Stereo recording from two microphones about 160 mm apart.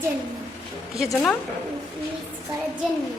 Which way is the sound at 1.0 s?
Centre (ahead or behind).